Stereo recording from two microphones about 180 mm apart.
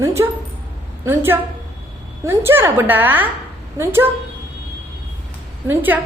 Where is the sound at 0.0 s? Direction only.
15° right (ahead or behind).